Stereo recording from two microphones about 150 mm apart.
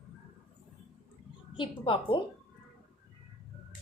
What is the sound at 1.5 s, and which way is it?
Speech, 35° left (ahead or behind).